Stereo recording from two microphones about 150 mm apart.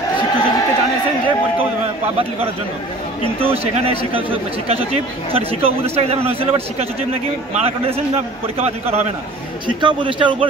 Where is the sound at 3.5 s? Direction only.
40° right (ahead or behind).